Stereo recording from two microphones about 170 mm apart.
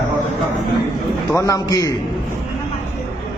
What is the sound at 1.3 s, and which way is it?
Speech, 20° left (ahead or behind).